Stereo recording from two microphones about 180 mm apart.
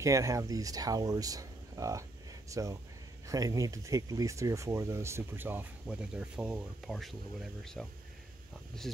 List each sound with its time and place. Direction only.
0.0 s speech: 15° right (ahead or behind); by 9.0 s centre (ahead or behind)